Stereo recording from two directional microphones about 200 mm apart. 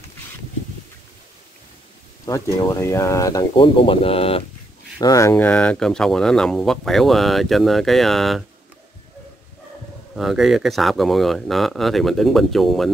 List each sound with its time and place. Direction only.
2.2 s speech: 15° left (ahead or behind)
4.9 s speech: 15° left (ahead or behind)
10.1 s speech: centre (ahead or behind)